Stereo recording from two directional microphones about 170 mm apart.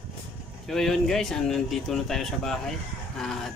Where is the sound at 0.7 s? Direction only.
Centre (ahead or behind).